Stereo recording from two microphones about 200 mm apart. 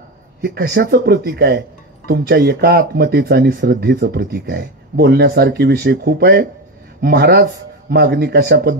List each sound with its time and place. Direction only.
0.4 s speech: 55° right (ahead or behind)